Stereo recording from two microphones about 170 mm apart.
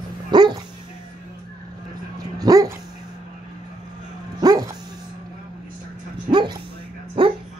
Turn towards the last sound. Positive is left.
turn(degrees=-30)  # may be behind; listen again after turning